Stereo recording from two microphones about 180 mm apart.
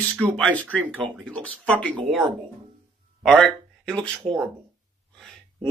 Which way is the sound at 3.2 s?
Centre (ahead or behind).